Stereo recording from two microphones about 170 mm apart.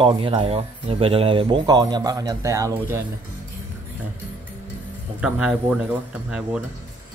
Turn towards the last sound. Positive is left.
turn(degrees=-5)  # may be behind; listen again after turning